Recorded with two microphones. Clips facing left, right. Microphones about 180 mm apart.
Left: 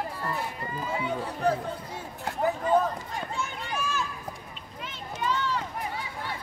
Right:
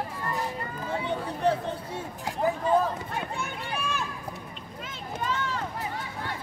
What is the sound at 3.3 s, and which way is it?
Run, 60° right (ahead or behind).